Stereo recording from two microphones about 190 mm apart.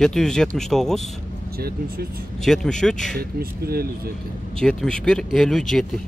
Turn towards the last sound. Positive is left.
turn(degrees=0)  # may be behind; listen again after turning